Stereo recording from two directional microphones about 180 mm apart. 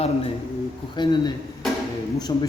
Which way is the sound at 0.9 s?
25° left (ahead or behind).